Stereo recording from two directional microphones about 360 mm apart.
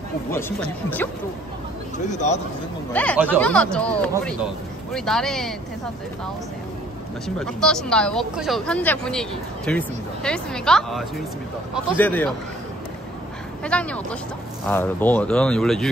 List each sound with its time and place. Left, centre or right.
0.3 s speech: centre
2.0 s a man's voice: centre
2.9 s speech: centre
7.2 s speech: centre
13.7 s speech: centre